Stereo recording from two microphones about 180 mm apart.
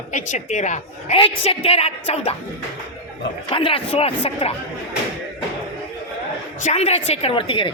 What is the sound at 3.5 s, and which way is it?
A woman's voice, 30° left (ahead or behind).